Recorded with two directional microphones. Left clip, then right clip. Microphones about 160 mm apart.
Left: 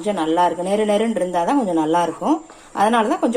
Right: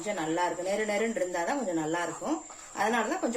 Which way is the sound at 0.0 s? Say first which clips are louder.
Left 12 dB; 45° left (ahead or behind).